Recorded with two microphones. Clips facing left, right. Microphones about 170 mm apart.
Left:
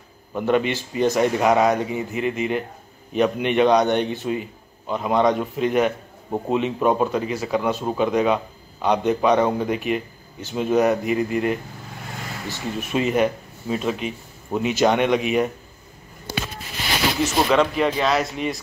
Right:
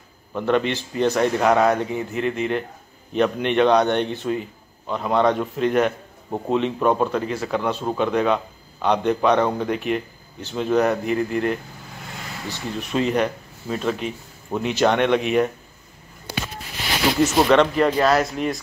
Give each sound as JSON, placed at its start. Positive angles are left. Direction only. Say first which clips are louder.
{"t": 0.3, "sound": "a man's voice", "louder": "even", "side_deg": 10}
{"t": 17.5, "sound": "speech", "louder": "right 2 dB", "side_deg": 5}